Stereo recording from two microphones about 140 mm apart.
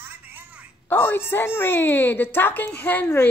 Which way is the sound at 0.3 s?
15° right (ahead or behind).